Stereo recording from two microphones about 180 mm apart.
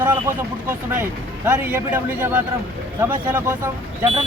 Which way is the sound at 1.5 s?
10° right (ahead or behind).